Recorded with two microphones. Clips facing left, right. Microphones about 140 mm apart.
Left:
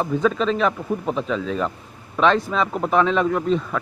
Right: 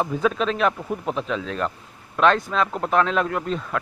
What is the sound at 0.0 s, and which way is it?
Speech, 5° right (ahead or behind).